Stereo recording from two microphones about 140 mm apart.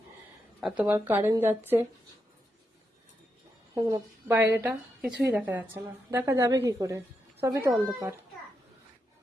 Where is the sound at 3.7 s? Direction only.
25° right (ahead or behind).